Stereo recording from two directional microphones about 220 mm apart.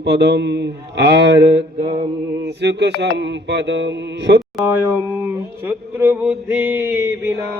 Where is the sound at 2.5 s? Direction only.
50° right (ahead or behind).